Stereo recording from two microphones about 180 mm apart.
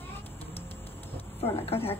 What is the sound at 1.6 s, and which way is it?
Speech, 30° left (ahead or behind).